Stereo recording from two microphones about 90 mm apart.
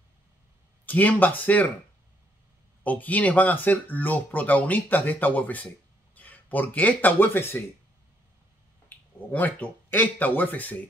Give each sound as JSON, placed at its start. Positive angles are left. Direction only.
{"t": 0.8, "sound": "speech", "side_deg": 20}
{"t": 2.8, "sound": "speech", "side_deg": 15}
{"t": 8.8, "sound": "speech", "side_deg": 20}